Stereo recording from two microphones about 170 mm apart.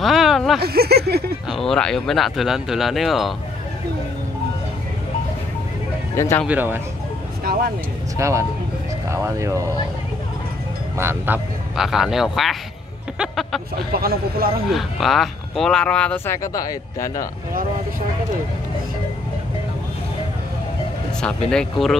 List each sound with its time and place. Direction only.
0.0 s a sound: centre (ahead or behind)
0.6 s speech: 70° right (ahead or behind)
1.5 s speech: centre (ahead or behind)
6.1 s speech: 15° left (ahead or behind)
6.4 s speech: 10° right (ahead or behind)
8.2 s speech: 15° right (ahead or behind)
11.0 s speech: 10° right (ahead or behind)
13.9 s speech: 60° right (ahead or behind)
14.7 s speech: centre (ahead or behind)
16.5 s speech: 20° left (ahead or behind)
21.2 s speech: 5° left (ahead or behind)